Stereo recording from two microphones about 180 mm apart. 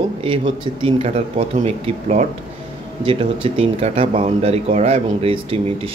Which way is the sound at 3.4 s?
30° right (ahead or behind).